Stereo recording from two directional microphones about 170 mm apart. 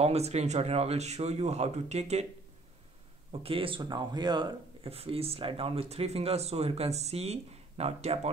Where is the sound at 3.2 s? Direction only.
35° right (ahead or behind).